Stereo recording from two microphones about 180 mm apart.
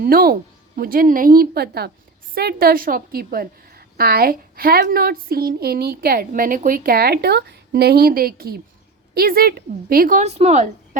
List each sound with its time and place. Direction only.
0.0 s a woman's voice: 55° right (ahead or behind); by 10.7 s 40° right (ahead or behind)